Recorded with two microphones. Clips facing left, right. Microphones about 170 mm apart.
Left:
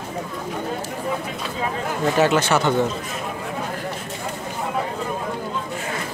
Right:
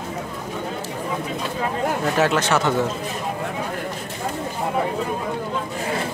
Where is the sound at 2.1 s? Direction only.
Centre (ahead or behind).